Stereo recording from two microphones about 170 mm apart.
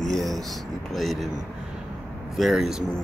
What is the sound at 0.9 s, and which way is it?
Speech, centre (ahead or behind).